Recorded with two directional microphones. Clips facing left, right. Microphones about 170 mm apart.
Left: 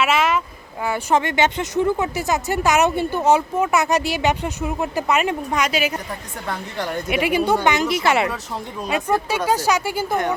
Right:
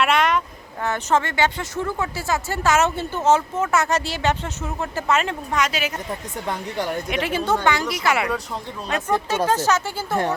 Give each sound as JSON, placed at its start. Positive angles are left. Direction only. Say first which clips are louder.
{"t": 0.0, "sound": "a sound", "louder": "even", "side_deg": 5}
{"t": 0.9, "sound": "speech", "louder": "left 2 dB", "side_deg": 15}
{"t": 6.1, "sound": "a woman's voice", "louder": "right 1 dB", "side_deg": -15}
{"t": 7.1, "sound": "speech", "louder": "left 6 dB", "side_deg": 10}
{"t": 8.9, "sound": "speech", "louder": "left 1 dB", "side_deg": 10}